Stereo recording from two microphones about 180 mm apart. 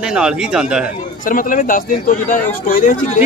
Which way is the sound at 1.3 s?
50° left (ahead or behind).